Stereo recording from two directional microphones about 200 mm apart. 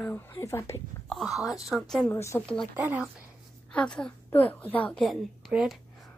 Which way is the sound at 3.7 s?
5° left (ahead or behind).